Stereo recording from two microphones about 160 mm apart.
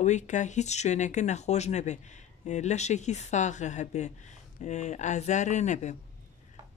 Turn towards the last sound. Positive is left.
turn(degrees=45)  # may be behind; listen again after turning